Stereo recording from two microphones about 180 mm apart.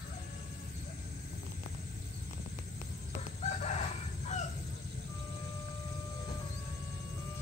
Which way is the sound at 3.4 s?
40° left (ahead or behind).